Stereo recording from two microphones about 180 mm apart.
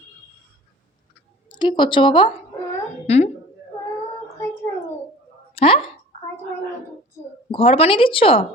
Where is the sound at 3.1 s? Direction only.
35° left (ahead or behind).